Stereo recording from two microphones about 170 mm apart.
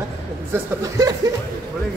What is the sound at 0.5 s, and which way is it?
Speech, 10° right (ahead or behind).